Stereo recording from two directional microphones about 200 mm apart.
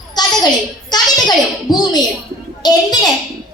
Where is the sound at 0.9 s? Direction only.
20° left (ahead or behind).